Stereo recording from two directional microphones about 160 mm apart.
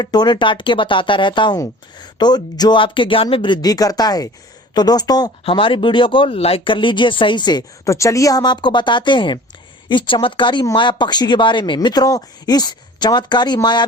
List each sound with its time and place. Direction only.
0.0 s speech: 25° left (ahead or behind)